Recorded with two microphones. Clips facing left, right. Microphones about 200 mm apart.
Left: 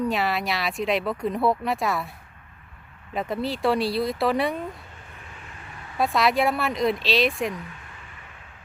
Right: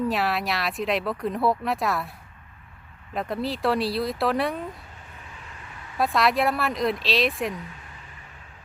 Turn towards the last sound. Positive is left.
turn(degrees=0)  # may be behind; listen again after turning